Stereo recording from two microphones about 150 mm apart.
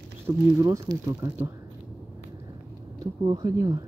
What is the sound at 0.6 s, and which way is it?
Speech, 20° right (ahead or behind).